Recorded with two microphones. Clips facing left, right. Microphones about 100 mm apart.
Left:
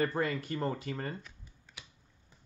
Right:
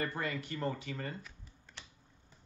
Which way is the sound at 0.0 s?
30° left (ahead or behind).